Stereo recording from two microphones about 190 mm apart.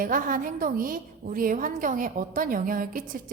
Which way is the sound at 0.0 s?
45° right (ahead or behind).